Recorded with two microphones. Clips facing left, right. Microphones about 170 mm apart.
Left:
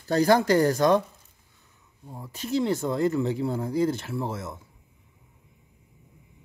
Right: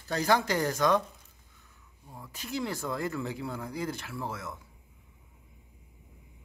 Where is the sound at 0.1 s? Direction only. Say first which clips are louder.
Left 7 dB; 35° left (ahead or behind).